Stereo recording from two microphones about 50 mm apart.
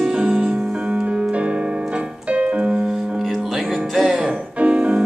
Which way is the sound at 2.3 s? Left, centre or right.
Right.